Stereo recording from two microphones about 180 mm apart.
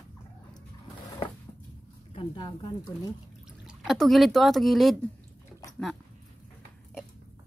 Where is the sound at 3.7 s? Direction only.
Centre (ahead or behind).